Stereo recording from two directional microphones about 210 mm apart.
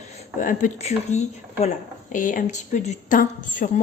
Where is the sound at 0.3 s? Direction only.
40° left (ahead or behind).